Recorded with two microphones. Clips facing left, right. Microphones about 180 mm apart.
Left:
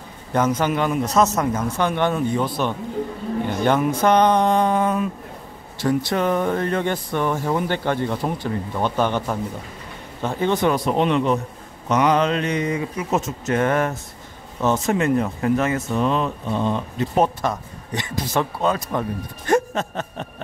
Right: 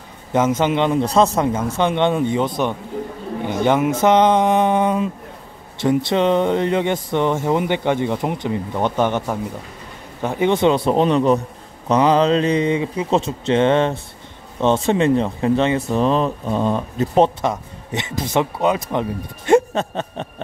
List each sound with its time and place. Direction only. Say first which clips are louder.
0.3 s speech: right 3 dB; 20° right (ahead or behind)
10.9 s speech: right 4 dB; 35° right (ahead or behind)
17.2 s speech: right 4 dB; 25° right (ahead or behind)